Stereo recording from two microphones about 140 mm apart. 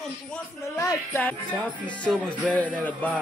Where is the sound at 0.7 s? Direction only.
25° left (ahead or behind).